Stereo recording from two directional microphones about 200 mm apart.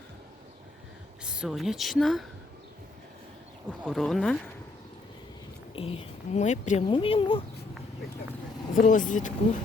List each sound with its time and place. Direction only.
1.2 s speech: 5° right (ahead or behind)
3.7 s speech: centre (ahead or behind)
5.7 s speech: 30° left (ahead or behind)
8.7 s speech: 40° left (ahead or behind)